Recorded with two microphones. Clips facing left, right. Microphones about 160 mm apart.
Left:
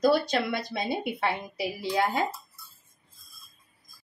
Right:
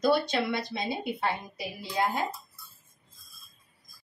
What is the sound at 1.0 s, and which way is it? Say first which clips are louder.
A woman's voice: left 2 dB; 75° left (ahead or behind).